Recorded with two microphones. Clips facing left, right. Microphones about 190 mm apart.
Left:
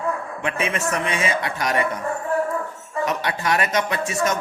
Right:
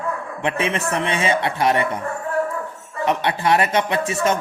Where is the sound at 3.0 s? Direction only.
25° right (ahead or behind).